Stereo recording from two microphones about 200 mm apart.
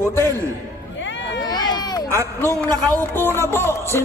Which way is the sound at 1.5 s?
20° left (ahead or behind).